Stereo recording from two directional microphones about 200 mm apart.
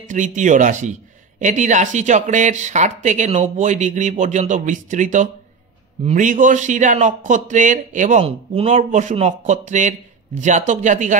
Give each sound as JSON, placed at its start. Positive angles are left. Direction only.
{"t": 0.0, "sound": "speech", "side_deg": -40}